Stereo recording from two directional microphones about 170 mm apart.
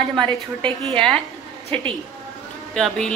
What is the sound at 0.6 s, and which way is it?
Speech, 30° right (ahead or behind).